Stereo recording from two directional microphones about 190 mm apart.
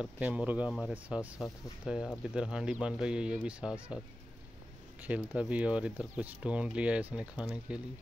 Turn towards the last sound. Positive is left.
turn(degrees=-5)  # may be behind; listen again after turning